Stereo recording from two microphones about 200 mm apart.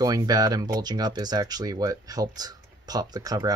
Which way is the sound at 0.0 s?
20° right (ahead or behind).